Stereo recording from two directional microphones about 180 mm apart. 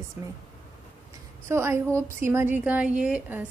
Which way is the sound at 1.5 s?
15° right (ahead or behind).